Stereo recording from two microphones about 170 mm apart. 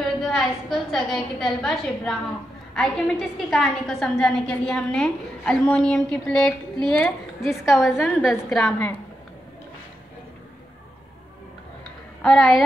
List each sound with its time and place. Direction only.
0.2 s a woman's voice: centre (ahead or behind)
12.2 s a woman's voice: centre (ahead or behind)